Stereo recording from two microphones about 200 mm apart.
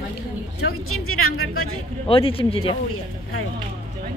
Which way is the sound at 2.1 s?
25° left (ahead or behind).